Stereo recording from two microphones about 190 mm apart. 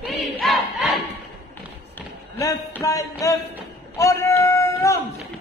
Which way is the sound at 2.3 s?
15° left (ahead or behind).